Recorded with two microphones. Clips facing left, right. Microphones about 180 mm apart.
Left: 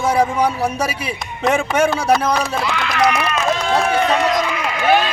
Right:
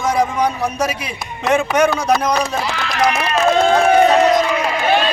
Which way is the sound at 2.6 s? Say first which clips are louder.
Left 1 dB; 35° right (ahead or behind).